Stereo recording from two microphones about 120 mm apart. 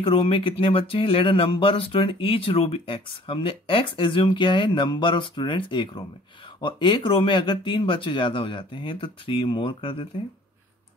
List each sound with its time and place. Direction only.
0.0 s speech: 45° left (ahead or behind)